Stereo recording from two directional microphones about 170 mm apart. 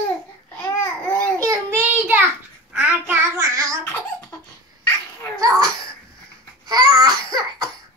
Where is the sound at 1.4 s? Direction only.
15° right (ahead or behind).